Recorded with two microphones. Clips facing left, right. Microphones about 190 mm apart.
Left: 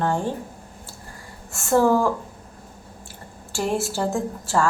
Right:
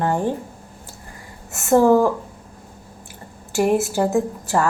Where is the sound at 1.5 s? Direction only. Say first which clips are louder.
Right 4 dB; 20° right (ahead or behind).